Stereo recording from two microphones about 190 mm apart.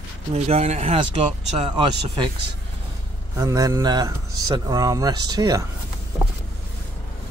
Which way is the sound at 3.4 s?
15° right (ahead or behind).